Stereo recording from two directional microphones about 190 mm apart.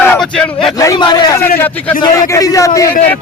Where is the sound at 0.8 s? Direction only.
20° left (ahead or behind).